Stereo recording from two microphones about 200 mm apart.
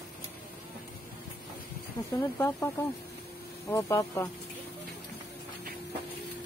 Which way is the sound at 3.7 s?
15° left (ahead or behind).